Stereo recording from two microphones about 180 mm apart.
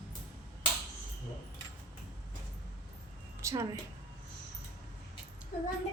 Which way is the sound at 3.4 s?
15° right (ahead or behind).